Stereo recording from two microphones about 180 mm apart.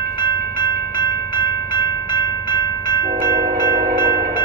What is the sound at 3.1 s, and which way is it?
Train, 40° right (ahead or behind).